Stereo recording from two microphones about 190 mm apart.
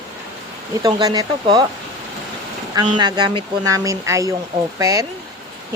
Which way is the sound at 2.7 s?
20° right (ahead or behind).